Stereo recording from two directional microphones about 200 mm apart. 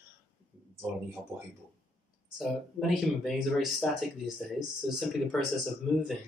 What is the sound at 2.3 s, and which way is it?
Speech, centre (ahead or behind).